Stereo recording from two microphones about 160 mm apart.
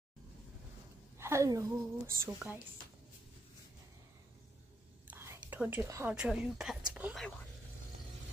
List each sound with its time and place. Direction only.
1.1 s a woman's voice: 15° right (ahead or behind)
5.1 s whispering: 15° right (ahead or behind)
5.6 s a woman's voice: 15° right (ahead or behind)
6.1 s a woman's voice: 5° right (ahead or behind)